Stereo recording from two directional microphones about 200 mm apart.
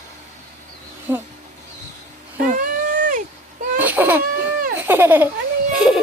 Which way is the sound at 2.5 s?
40° right (ahead or behind).